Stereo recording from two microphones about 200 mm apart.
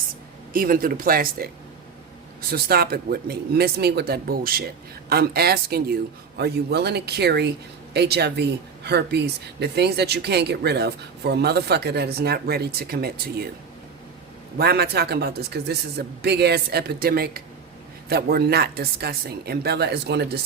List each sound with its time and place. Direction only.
0.5 s a man's voice: 45° right (ahead or behind)
2.5 s a man's voice: 50° right (ahead or behind)
14.6 s a man's voice: 55° right (ahead or behind)